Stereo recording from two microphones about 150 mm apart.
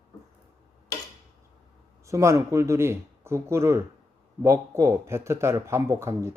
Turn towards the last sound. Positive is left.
turn(degrees=-20)  # may be behind; listen again after turning